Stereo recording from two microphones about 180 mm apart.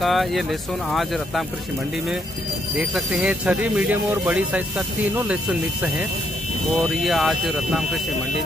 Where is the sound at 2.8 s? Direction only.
5° right (ahead or behind).